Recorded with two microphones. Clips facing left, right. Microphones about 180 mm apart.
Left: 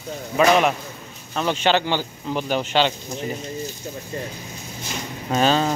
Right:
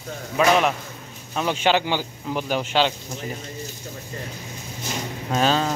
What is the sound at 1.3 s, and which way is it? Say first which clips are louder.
Speech: left 1 dB; 10° right (ahead or behind).